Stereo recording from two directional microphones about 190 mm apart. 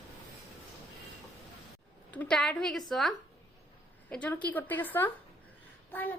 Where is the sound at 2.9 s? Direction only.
Centre (ahead or behind).